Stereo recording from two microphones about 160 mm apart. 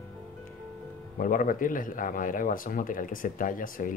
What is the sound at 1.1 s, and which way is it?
Speech, 60° left (ahead or behind).